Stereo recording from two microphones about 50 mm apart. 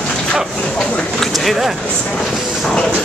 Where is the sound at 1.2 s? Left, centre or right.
Centre.